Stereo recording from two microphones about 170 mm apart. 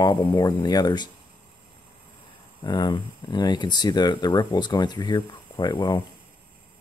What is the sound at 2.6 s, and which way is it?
Speech, 25° left (ahead or behind).